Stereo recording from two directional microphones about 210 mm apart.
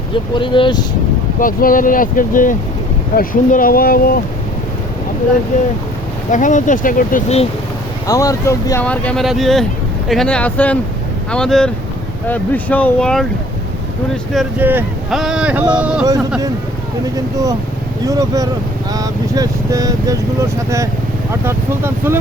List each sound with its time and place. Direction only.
0.3 s speech: 25° left (ahead or behind)
1.4 s speech: 40° left (ahead or behind)
5.5 s speech: 35° left (ahead or behind)
8.0 s speech: 15° left (ahead or behind)
14.3 s speech: 10° right (ahead or behind)
18.0 s speech: 15° right (ahead or behind)